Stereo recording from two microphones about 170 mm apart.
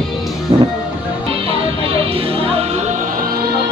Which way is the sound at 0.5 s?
25° right (ahead or behind).